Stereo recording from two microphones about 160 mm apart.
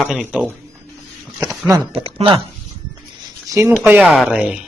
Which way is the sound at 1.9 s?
35° right (ahead or behind).